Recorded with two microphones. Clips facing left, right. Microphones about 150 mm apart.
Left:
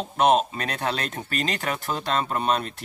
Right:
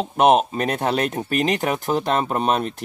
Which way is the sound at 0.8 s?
50° right (ahead or behind).